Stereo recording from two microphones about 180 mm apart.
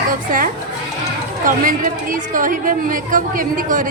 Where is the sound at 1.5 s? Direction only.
50° right (ahead or behind).